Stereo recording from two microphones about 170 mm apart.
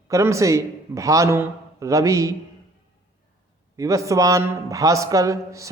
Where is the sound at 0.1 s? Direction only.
15° right (ahead or behind).